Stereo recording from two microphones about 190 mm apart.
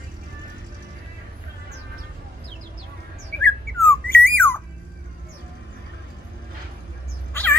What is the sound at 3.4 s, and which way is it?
Squawk, 10° left (ahead or behind).